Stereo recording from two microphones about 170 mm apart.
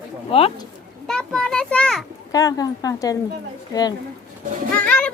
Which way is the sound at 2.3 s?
20° left (ahead or behind).